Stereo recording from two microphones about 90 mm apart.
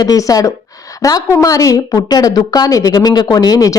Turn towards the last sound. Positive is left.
turn(degrees=45)  # may be behind; listen again after turning